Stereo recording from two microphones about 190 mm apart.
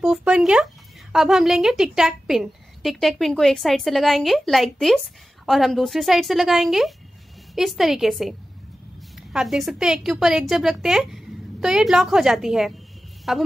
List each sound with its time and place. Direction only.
0.0 s a woman's voice: 5° right (ahead or behind)